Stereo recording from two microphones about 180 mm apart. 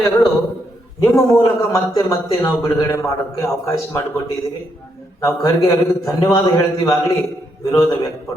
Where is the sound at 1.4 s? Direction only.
20° left (ahead or behind).